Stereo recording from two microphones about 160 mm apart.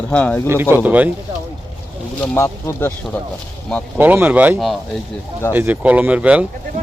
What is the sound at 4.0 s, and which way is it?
Speech, 10° right (ahead or behind).